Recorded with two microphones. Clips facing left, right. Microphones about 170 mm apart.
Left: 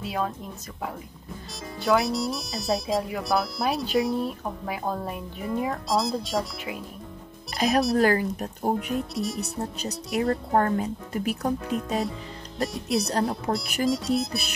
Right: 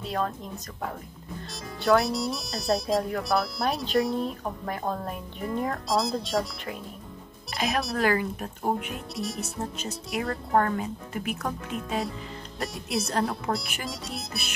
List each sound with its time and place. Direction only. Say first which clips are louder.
0.0 s speech: even; 5° left (ahead or behind)
1.9 s speech: even; centre (ahead or behind)
7.5 s speech: left 6 dB; 40° left (ahead or behind)
9.1 s speech: left 3 dB; centre (ahead or behind)
9.4 s speech: left 2 dB; 40° left (ahead or behind)
12.6 s speech: left 5 dB; centre (ahead or behind)
12.9 s speech: left 2 dB; 35° left (ahead or behind)
13.8 s speech: left 12 dB; centre (ahead or behind)